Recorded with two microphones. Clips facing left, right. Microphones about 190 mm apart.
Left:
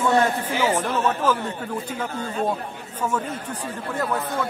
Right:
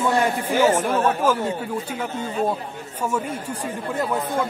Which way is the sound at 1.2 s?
10° right (ahead or behind).